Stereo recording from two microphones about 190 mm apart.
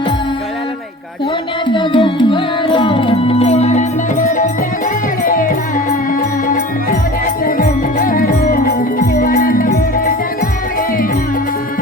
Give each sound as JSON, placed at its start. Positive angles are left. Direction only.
{"t": 1.6, "sound": "music", "side_deg": 25}
{"t": 7.4, "sound": "music", "side_deg": 50}